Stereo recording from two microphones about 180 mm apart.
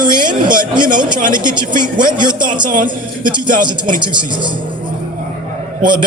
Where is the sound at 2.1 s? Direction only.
25° right (ahead or behind).